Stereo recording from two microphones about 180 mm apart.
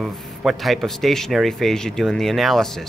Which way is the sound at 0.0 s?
Centre (ahead or behind).